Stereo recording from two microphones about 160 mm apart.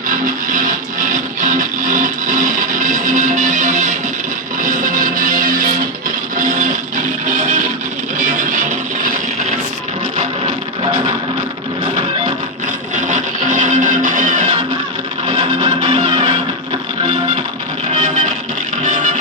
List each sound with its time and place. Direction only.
0.1 s a sound: 60° right (ahead or behind)
1.4 s music: 55° right (ahead or behind)
12.6 s music: 50° right (ahead or behind)
15.3 s music: 30° right (ahead or behind)
18.0 s music: 50° right (ahead or behind)